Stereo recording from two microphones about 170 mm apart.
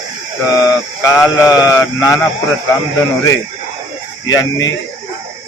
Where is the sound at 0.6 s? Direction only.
20° left (ahead or behind).